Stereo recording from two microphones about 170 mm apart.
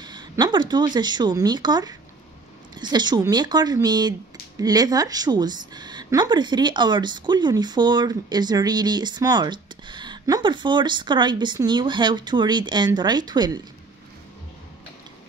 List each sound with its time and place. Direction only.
0.0 s a woman's voice: 25° right (ahead or behind)